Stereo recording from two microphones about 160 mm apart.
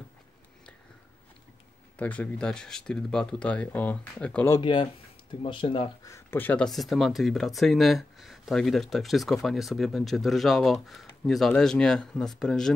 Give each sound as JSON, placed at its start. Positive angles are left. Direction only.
{"t": 2.0, "sound": "speech", "side_deg": 10}
{"t": 4.6, "sound": "speech", "side_deg": 30}
{"t": 6.0, "sound": "speech", "side_deg": 15}